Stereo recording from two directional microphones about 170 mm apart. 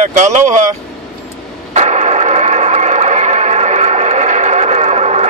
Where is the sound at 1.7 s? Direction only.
40° right (ahead or behind).